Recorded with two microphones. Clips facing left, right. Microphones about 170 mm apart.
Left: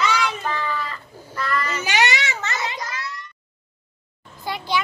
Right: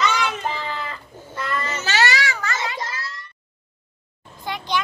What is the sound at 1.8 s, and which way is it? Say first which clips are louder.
Child singing: right 3 dB; 15° left (ahead or behind).